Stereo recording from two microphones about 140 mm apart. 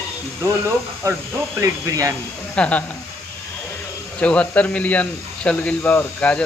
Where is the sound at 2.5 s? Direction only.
10° left (ahead or behind).